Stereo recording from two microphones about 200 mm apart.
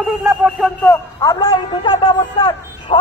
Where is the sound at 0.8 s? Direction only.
15° left (ahead or behind).